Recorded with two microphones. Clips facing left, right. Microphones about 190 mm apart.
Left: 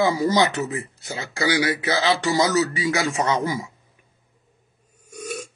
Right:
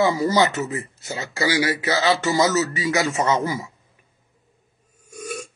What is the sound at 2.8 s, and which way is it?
Speech, 20° right (ahead or behind).